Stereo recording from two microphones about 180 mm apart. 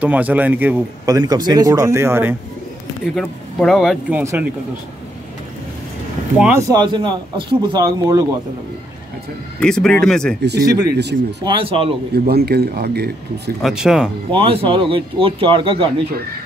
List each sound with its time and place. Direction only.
0.0 s a man's voice: 10° right (ahead or behind)
3.2 s speech: centre (ahead or behind)
4.2 s a man's voice: 15° right (ahead or behind)
6.3 s a man's voice: 5° right (ahead or behind)
6.7 s speech: 25° right (ahead or behind)
9.6 s speech: 5° left (ahead or behind)
10.6 s speech: 20° right (ahead or behind)
12.1 s speech: 60° right (ahead or behind)
13.6 s speech: centre (ahead or behind)
14.3 s speech: 30° right (ahead or behind)